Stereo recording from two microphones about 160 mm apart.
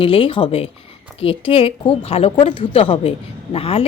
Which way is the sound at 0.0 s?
35° left (ahead or behind).